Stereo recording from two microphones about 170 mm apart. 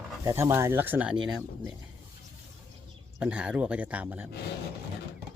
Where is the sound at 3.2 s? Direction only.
5° right (ahead or behind).